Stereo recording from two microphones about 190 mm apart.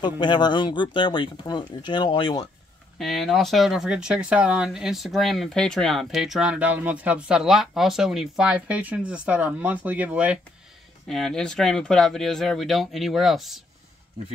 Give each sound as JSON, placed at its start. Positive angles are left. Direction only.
{"t": 0.0, "sound": "speech", "side_deg": 25}
{"t": 3.0, "sound": "speech", "side_deg": 0}